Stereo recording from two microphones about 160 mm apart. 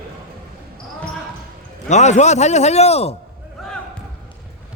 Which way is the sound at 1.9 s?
45° left (ahead or behind).